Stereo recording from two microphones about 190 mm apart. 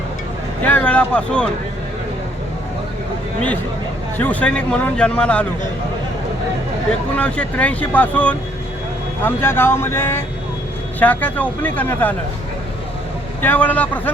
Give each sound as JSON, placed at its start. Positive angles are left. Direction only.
{"t": 0.6, "sound": "speech", "side_deg": 5}
{"t": 4.2, "sound": "speech", "side_deg": 10}
{"t": 7.2, "sound": "speech", "side_deg": 5}
{"t": 13.4, "sound": "speech", "side_deg": 10}